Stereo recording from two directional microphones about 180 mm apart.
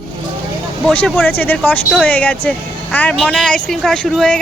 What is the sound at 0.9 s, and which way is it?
Speech, centre (ahead or behind).